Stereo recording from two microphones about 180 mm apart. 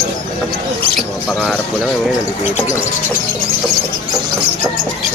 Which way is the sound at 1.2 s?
Centre (ahead or behind).